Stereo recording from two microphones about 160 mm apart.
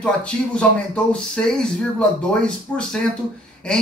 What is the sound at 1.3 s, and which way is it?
Speech, 5° left (ahead or behind).